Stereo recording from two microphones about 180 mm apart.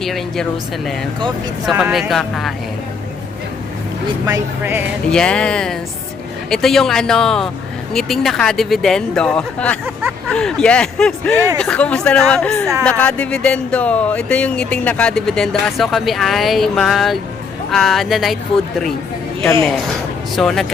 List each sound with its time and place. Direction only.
0.0 s speech: centre (ahead or behind)
1.6 s speech: 5° right (ahead or behind)
4.3 s music: 10° right (ahead or behind)
5.1 s speech: 5° left (ahead or behind)
9.8 s a sound: 10° right (ahead or behind)
10.2 s speech: 5° left (ahead or behind)
20.3 s speech: centre (ahead or behind)